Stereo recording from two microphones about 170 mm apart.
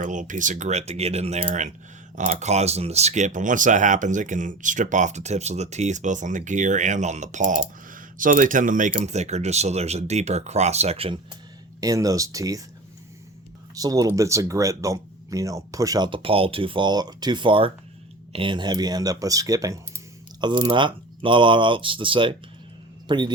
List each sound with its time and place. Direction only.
0.0 s speech: 50° right (ahead or behind)
11.8 s speech: 20° right (ahead or behind)
13.7 s a man's voice: 20° right (ahead or behind)